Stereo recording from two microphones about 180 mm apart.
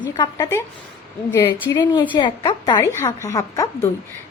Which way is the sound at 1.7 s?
20° left (ahead or behind).